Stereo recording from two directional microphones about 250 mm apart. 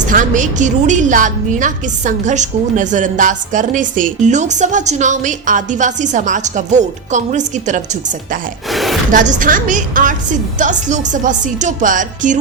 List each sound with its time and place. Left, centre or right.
0.1 s a woman's voice: right
8.7 s speech: centre
9.1 s a woman's voice: right